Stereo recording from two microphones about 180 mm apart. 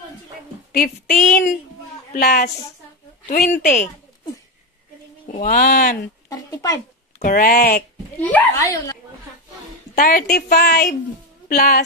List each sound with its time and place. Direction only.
0.7 s a woman's voice: 50° left (ahead or behind)
5.3 s speech: 50° left (ahead or behind)
6.2 s speech: 20° left (ahead or behind)
7.2 s speech: 50° left (ahead or behind)
8.2 s a child's voice: 10° left (ahead or behind)
9.9 s a woman's voice: 55° left (ahead or behind)